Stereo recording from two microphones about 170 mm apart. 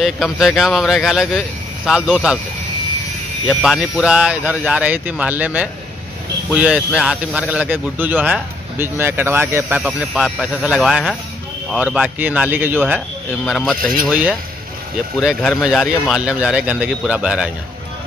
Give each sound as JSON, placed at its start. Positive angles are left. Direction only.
{"t": 0.0, "sound": "speech", "side_deg": 0}
{"t": 3.4, "sound": "a man's voice", "side_deg": 0}